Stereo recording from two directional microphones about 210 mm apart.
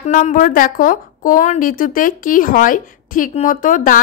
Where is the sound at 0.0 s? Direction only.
40° left (ahead or behind).